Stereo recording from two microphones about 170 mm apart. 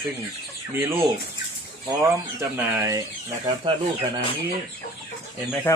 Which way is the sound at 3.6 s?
30° right (ahead or behind).